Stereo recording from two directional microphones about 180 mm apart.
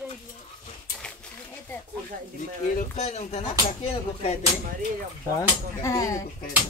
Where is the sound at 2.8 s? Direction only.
40° left (ahead or behind).